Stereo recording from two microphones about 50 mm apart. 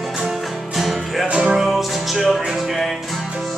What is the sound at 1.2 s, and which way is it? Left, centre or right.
Music, right.